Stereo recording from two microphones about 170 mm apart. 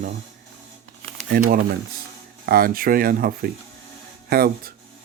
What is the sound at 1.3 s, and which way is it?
Speech, 55° right (ahead or behind).